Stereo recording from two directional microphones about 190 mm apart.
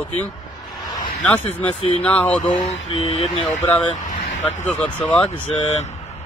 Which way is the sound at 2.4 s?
30° left (ahead or behind).